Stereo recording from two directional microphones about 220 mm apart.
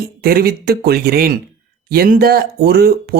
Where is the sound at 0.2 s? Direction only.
45° right (ahead or behind).